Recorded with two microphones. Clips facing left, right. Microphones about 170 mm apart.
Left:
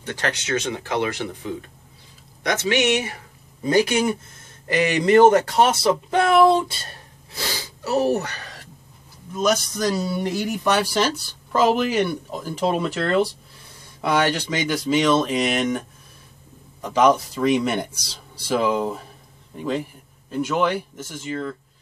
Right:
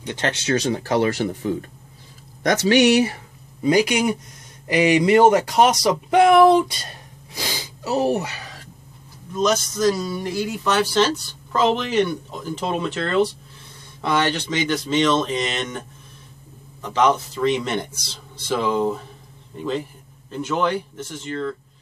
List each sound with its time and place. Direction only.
0.0 s speech: 20° right (ahead or behind)
3.6 s speech: 15° right (ahead or behind)
7.3 s a sound: 15° right (ahead or behind)
9.3 s speech: 10° left (ahead or behind)
16.8 s speech: 10° left (ahead or behind)